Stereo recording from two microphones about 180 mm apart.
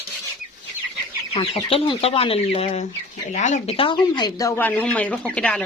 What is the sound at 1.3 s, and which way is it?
Speech, 30° left (ahead or behind).